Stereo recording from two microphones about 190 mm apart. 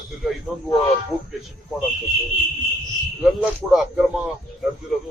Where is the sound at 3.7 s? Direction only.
Centre (ahead or behind).